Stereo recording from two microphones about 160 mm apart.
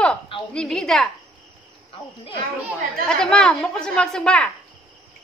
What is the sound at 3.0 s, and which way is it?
A woman's voice, 5° left (ahead or behind).